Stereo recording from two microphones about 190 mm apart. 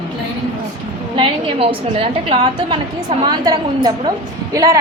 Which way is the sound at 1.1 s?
30° right (ahead or behind).